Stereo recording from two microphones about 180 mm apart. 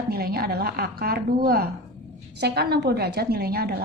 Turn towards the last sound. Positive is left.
turn(degrees=-60)  # may be behind; listen again after turning